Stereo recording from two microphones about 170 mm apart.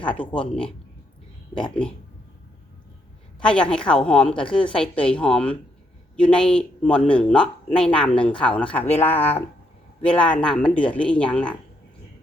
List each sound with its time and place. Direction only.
0.0 s a woman's voice: 5° left (ahead or behind)
3.4 s a woman's voice: 5° left (ahead or behind)
9.1 s speech: 35° left (ahead or behind)
10.0 s speech: 5° left (ahead or behind)